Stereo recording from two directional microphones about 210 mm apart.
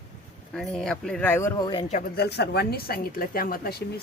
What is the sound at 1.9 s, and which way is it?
A woman's voice, 45° left (ahead or behind).